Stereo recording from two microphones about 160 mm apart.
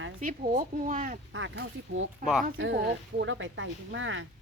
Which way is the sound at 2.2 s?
55° right (ahead or behind).